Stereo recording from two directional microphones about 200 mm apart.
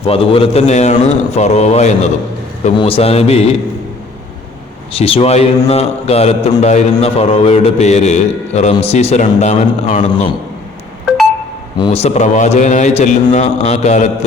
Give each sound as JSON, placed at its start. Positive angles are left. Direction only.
{"t": 0.0, "sound": "a man's voice", "side_deg": 30}
{"t": 4.9, "sound": "a man's voice", "side_deg": 30}
{"t": 11.8, "sound": "a man's voice", "side_deg": 30}